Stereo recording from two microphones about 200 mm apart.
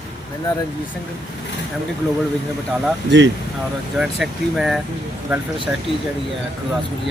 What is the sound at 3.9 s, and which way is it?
Speech, centre (ahead or behind).